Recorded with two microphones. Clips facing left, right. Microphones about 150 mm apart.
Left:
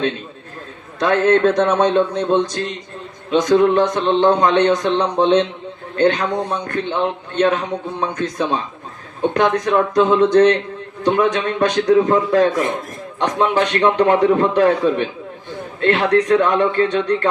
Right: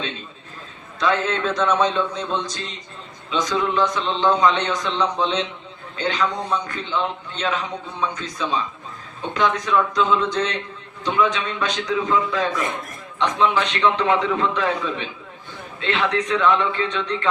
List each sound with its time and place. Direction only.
0.9 s a man's voice: 55° left (ahead or behind)